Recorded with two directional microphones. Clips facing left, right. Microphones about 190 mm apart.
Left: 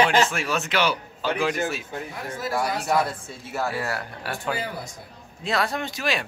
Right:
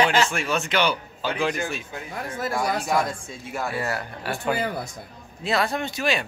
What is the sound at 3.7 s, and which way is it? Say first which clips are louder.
Speech: right 1 dB; centre (ahead or behind).